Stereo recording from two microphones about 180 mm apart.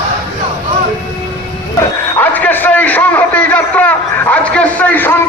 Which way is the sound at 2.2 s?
10° left (ahead or behind).